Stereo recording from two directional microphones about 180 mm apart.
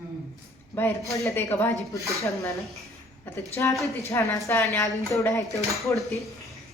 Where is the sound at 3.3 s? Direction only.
10° left (ahead or behind).